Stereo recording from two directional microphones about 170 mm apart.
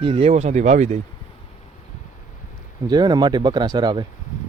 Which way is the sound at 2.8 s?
25° right (ahead or behind).